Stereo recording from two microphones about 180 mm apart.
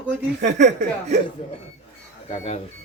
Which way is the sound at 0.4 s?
40° right (ahead or behind).